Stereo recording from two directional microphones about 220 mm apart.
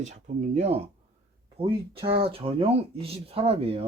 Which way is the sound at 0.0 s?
30° right (ahead or behind).